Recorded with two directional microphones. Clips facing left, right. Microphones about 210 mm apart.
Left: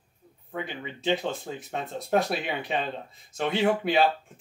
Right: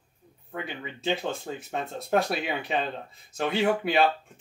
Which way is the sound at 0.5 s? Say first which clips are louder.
Left 1 dB; centre (ahead or behind).